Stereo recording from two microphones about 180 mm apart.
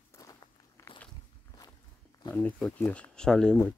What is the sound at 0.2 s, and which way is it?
Walk, 15° left (ahead or behind).